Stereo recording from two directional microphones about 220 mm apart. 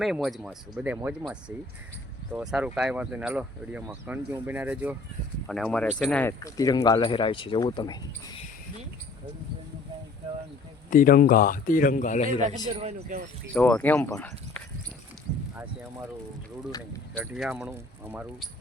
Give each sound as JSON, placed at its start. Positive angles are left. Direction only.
{"t": 0.0, "sound": "speech", "side_deg": 0}
{"t": 10.9, "sound": "speech", "side_deg": 40}
{"t": 12.4, "sound": "speech", "side_deg": -35}
{"t": 12.6, "sound": "speech", "side_deg": -20}
{"t": 13.5, "sound": "speech", "side_deg": 5}
{"t": 17.2, "sound": "speech", "side_deg": 0}